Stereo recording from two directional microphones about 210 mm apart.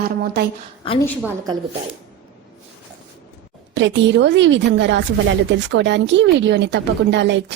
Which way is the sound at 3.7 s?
55° right (ahead or behind).